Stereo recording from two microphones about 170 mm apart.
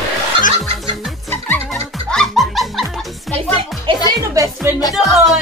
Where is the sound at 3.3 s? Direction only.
35° right (ahead or behind).